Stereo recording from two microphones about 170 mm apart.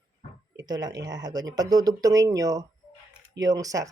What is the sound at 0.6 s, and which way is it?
Speech, 25° right (ahead or behind).